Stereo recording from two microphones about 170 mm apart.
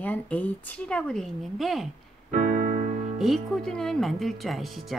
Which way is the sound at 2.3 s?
50° right (ahead or behind).